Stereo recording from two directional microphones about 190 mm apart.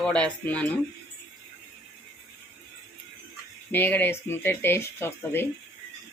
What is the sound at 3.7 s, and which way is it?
Speech, 10° left (ahead or behind).